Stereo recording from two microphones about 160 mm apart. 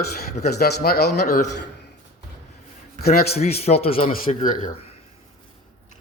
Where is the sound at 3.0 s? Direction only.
75° left (ahead or behind).